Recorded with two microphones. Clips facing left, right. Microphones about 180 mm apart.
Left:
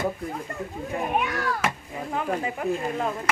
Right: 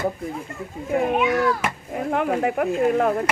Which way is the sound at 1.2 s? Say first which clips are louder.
Right 7 dB; 65° right (ahead or behind).